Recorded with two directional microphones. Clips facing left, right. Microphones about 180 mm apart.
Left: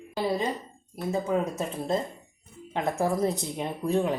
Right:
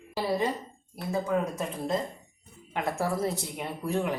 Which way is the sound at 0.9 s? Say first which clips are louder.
Left 1 dB; 25° left (ahead or behind).